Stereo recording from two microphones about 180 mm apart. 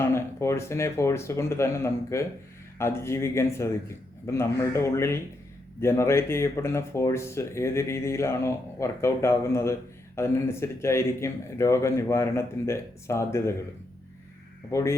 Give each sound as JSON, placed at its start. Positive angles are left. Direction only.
{"t": 0.0, "sound": "speech", "side_deg": 15}
{"t": 14.7, "sound": "speech", "side_deg": 15}